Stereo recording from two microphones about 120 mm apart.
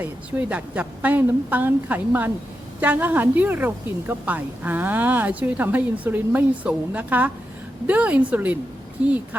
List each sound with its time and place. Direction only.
0.0 s a woman's voice: 15° right (ahead or behind)